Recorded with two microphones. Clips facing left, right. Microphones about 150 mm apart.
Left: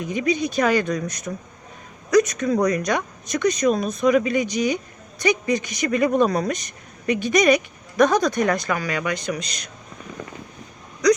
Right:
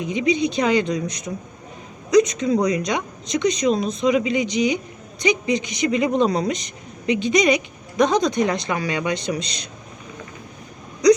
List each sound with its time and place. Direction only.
0.0 s speech: 20° right (ahead or behind)
2.4 s speech: 15° right (ahead or behind)
9.4 s speech: 45° left (ahead or behind)